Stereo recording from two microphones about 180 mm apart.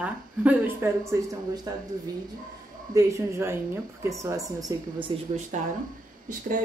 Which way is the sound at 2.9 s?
15° right (ahead or behind).